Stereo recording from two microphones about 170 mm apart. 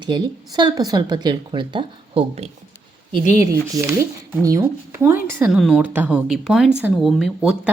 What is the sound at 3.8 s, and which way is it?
A woman's voice, 20° right (ahead or behind).